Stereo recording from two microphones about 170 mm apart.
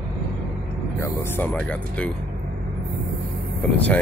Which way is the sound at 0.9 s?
15° left (ahead or behind).